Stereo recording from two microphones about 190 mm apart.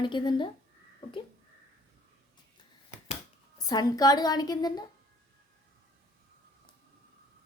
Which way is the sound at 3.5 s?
20° left (ahead or behind).